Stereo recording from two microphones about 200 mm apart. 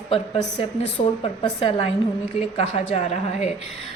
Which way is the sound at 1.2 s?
25° left (ahead or behind).